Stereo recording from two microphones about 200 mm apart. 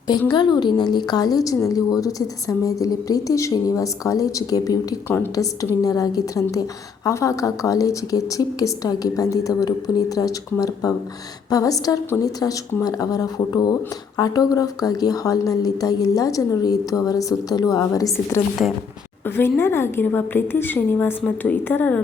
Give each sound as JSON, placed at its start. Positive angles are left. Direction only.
{"t": 0.1, "sound": "a woman's voice", "side_deg": 20}